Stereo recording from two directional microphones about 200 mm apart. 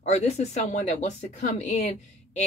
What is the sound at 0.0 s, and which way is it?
Speech, 35° left (ahead or behind).